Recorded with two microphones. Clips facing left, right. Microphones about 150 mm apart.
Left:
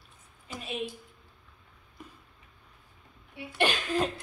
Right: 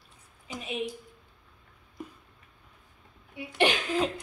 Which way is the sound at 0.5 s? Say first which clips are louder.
Right 2 dB; 15° right (ahead or behind).